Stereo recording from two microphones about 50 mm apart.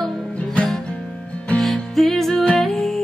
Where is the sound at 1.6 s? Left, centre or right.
Centre.